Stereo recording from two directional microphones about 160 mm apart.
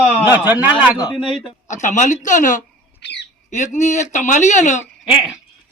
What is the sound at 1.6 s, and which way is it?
Speech, 50° left (ahead or behind).